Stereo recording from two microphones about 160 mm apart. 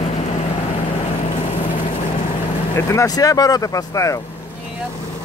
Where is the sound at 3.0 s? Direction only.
20° left (ahead or behind).